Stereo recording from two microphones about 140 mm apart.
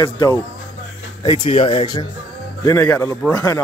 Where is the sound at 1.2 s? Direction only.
40° left (ahead or behind).